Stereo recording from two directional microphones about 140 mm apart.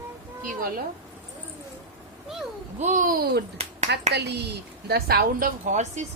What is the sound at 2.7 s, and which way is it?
Speech, 60° right (ahead or behind).